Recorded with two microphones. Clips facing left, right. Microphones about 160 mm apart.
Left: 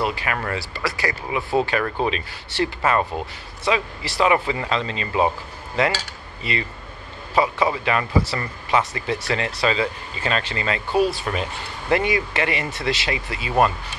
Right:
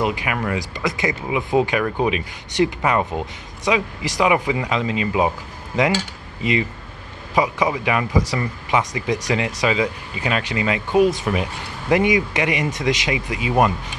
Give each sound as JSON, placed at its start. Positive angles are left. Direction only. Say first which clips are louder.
{"t": 0.0, "sound": "speech", "louder": "right 2 dB", "side_deg": -15}
{"t": 7.3, "sound": "speech", "louder": "right 1 dB", "side_deg": -15}